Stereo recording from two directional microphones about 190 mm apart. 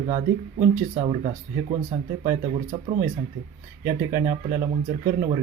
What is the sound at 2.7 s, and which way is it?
Speech, 20° right (ahead or behind).